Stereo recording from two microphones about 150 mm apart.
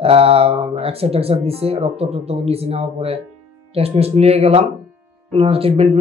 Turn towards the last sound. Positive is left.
turn(degrees=-40)  # may be behind; listen again after turning